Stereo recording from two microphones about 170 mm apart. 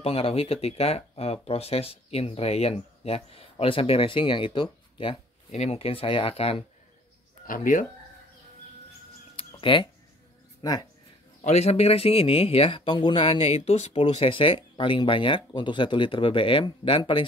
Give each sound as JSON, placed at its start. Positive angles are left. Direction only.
{"t": 0.0, "sound": "speech", "side_deg": 35}
{"t": 7.4, "sound": "speech", "side_deg": 50}
{"t": 9.6, "sound": "speech", "side_deg": 30}
{"t": 11.4, "sound": "speech", "side_deg": 40}